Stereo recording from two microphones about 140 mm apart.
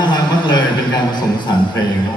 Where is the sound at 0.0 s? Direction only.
30° left (ahead or behind).